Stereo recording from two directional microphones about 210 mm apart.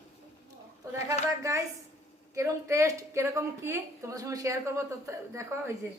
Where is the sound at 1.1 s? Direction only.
15° right (ahead or behind).